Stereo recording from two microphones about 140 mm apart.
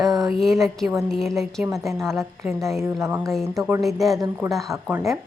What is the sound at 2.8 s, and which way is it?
Speech, 20° right (ahead or behind).